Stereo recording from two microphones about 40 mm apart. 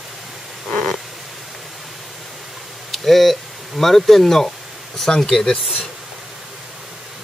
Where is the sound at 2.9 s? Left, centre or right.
Centre.